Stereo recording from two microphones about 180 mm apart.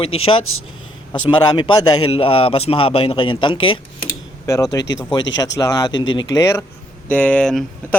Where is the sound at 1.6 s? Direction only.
25° left (ahead or behind).